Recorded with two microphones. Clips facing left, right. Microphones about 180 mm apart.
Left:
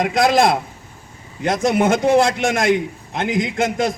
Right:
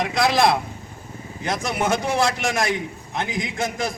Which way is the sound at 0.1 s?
50° left (ahead or behind).